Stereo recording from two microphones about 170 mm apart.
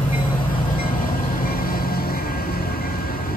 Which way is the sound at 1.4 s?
60° left (ahead or behind).